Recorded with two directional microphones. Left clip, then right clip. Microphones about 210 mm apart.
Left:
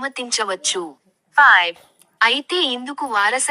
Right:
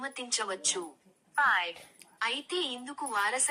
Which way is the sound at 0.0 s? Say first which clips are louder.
Left 12 dB; 45° left (ahead or behind).